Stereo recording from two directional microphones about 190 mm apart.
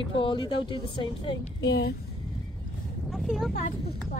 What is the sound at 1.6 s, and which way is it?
Speech, 60° left (ahead or behind).